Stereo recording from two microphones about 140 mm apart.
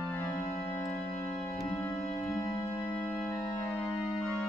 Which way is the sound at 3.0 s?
10° left (ahead or behind).